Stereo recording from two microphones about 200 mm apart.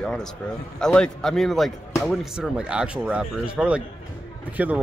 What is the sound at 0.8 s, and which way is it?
Speech, 5° left (ahead or behind).